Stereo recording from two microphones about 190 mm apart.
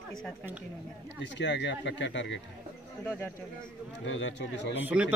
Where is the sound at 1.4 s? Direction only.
70° left (ahead or behind).